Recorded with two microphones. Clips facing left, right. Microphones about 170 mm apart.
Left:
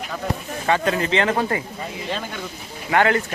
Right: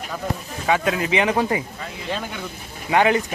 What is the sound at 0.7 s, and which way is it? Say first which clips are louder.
Speech: even; 5° right (ahead or behind).